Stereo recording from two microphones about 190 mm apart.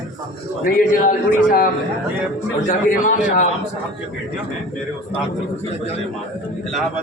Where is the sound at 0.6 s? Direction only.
45° left (ahead or behind).